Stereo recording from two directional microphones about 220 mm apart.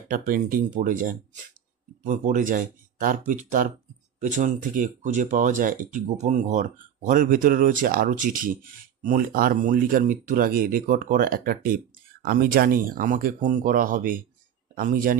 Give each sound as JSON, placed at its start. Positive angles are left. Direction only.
{"t": 0.1, "sound": "speech", "side_deg": -40}